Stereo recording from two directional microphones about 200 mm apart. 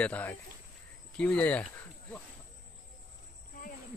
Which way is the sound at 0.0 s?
10° left (ahead or behind).